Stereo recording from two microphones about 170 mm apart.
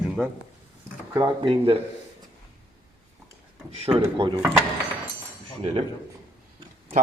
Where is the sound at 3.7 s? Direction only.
35° right (ahead or behind).